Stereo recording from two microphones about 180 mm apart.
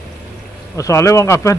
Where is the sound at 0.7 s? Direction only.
15° left (ahead or behind).